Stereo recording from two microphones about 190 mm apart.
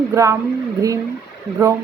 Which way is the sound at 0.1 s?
15° right (ahead or behind).